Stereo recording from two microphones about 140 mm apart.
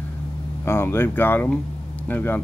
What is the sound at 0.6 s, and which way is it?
Speech, 15° left (ahead or behind).